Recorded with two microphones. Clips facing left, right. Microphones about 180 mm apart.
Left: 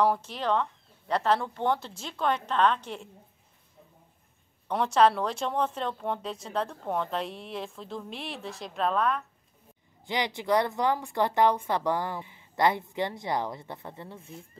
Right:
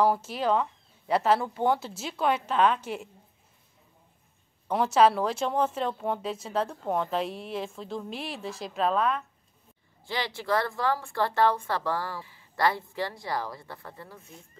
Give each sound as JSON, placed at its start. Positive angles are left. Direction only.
{"t": 0.0, "sound": "speech", "side_deg": -5}
{"t": 4.6, "sound": "speech", "side_deg": -5}
{"t": 10.0, "sound": "speech", "side_deg": 20}